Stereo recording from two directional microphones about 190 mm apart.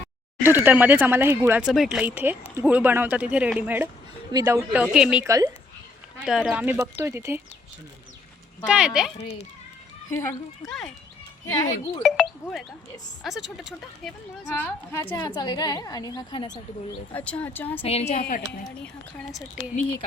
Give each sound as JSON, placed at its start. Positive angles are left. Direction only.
{"t": 0.4, "sound": "speech", "side_deg": -10}
{"t": 1.6, "sound": "speech", "side_deg": 0}
{"t": 5.2, "sound": "speech", "side_deg": -20}
{"t": 6.2, "sound": "speech", "side_deg": 0}
{"t": 8.6, "sound": "speech", "side_deg": 0}
{"t": 9.2, "sound": "a woman's voice", "side_deg": 35}
{"t": 10.1, "sound": "speech", "side_deg": 15}
{"t": 11.4, "sound": "speech", "side_deg": 20}
{"t": 12.0, "sound": "speech", "side_deg": 0}
{"t": 14.5, "sound": "a woman's voice", "side_deg": 10}
{"t": 17.1, "sound": "speech", "side_deg": 10}
{"t": 17.8, "sound": "a woman's voice", "side_deg": 35}